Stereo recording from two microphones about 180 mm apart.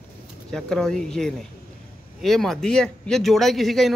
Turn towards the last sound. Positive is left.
turn(degrees=0)  # may be behind; listen again after turning